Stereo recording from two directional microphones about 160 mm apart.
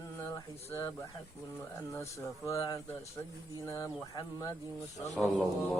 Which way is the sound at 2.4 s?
20° left (ahead or behind).